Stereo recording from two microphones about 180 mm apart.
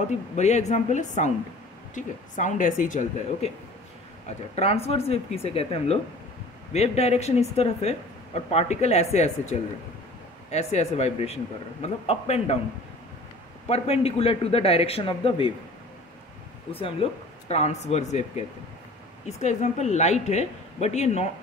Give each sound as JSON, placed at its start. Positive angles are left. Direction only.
{"t": 0.4, "sound": "a woman's voice", "side_deg": 40}
{"t": 4.6, "sound": "a woman's voice", "side_deg": 35}
{"t": 13.7, "sound": "a woman's voice", "side_deg": 35}
{"t": 16.8, "sound": "a woman's voice", "side_deg": 35}